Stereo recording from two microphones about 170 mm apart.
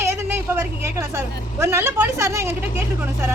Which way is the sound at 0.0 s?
15° right (ahead or behind).